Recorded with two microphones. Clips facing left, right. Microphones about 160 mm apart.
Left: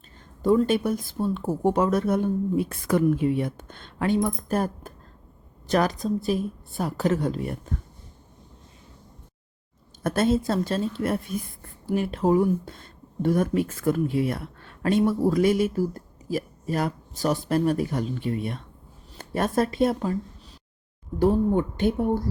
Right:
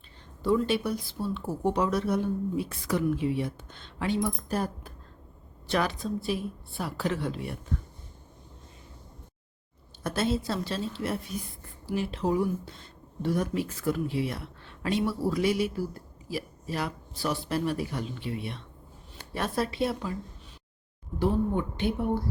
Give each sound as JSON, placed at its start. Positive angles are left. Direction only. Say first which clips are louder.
{"t": 0.4, "sound": "speech", "louder": "left 5 dB", "side_deg": 45}
{"t": 10.0, "sound": "speech", "louder": "left 6 dB", "side_deg": 50}
{"t": 21.2, "sound": "speech", "louder": "left 6 dB", "side_deg": 45}